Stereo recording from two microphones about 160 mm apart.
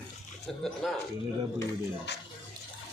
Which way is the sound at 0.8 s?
Centre (ahead or behind).